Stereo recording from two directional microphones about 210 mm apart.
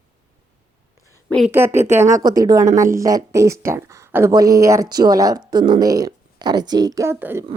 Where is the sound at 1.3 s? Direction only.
Centre (ahead or behind).